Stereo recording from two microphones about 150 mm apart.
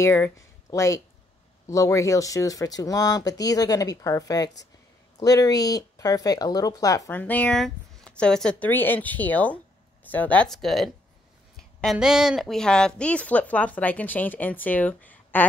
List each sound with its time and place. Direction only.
0.0 s speech: 20° left (ahead or behind)
7.2 s speech: 10° left (ahead or behind)